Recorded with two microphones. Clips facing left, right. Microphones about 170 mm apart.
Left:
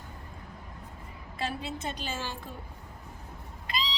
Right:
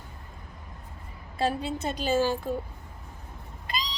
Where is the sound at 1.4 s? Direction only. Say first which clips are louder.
Right 7 dB; 40° right (ahead or behind).